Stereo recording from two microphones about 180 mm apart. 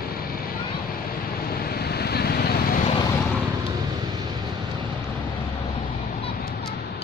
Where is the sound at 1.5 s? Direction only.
60° left (ahead or behind).